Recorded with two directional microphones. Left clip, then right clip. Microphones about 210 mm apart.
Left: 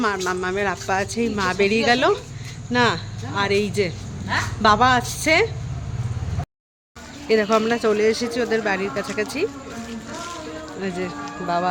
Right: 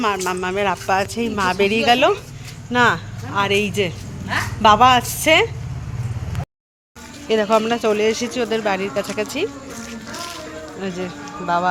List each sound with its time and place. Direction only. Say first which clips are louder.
0.0 s speech: right 2 dB; centre (ahead or behind)
7.3 s speech: right 2 dB; 5° left (ahead or behind)
10.2 s a sound: right 2 dB; 55° right (ahead or behind)
10.8 s speech: even; 5° left (ahead or behind)